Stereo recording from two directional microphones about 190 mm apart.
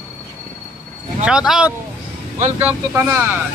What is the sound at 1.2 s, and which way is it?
A man's voice, 5° right (ahead or behind).